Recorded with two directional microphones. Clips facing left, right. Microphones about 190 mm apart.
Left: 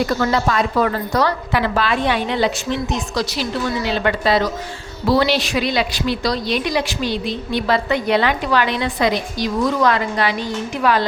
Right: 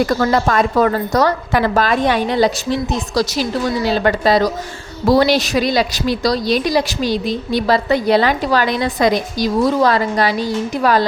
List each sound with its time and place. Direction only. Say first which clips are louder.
0.0 s a woman's voice: right 3 dB; 45° right (ahead or behind)
3.8 s a woman's voice: right 4 dB; 40° right (ahead or behind)